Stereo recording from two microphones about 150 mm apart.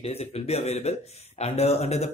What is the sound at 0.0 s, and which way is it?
A man's voice, 45° left (ahead or behind).